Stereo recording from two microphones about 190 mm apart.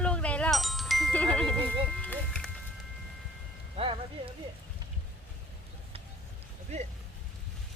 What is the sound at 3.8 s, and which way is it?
Music, 30° right (ahead or behind).